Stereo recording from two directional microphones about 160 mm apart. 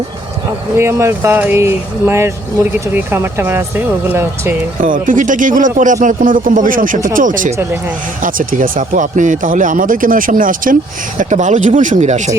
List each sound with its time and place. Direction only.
0.8 s speech: 15° right (ahead or behind)
4.8 s a man's voice: 55° right (ahead or behind)